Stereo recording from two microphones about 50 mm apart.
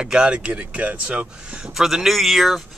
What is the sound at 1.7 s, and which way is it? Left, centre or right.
Speech, centre.